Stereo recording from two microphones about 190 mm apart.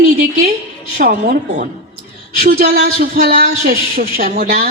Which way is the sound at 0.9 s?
50° right (ahead or behind).